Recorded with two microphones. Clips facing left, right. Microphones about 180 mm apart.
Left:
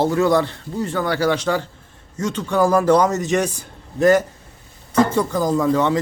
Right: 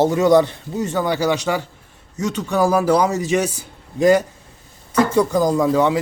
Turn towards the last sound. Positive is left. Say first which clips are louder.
# right 1 dB
turn(degrees=-10)  # may be behind; listen again after turning